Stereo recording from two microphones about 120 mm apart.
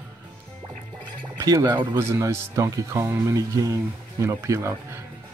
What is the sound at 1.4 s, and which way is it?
Speech, 30° right (ahead or behind).